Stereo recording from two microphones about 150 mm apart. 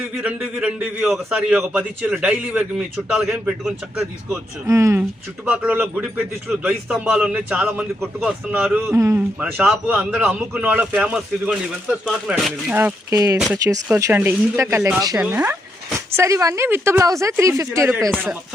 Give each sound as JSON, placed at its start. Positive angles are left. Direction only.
{"t": 0.2, "sound": "a man's voice", "side_deg": -10}
{"t": 4.6, "sound": "a man's voice", "side_deg": -20}
{"t": 9.4, "sound": "a man's voice", "side_deg": -5}
{"t": 12.7, "sound": "a man's voice", "side_deg": -15}
{"t": 18.1, "sound": "speech", "side_deg": 0}